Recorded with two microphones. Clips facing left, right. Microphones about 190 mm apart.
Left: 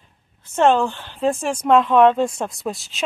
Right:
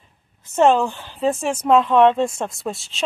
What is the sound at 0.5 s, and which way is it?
A woman's voice, 5° right (ahead or behind).